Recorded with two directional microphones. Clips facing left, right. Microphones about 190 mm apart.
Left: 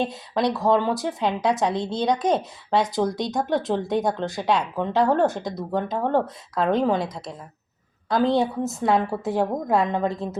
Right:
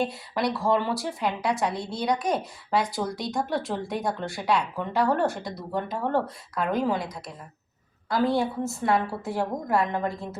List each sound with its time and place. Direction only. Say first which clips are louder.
0.0 s a woman's voice: left 3 dB; 20° left (ahead or behind)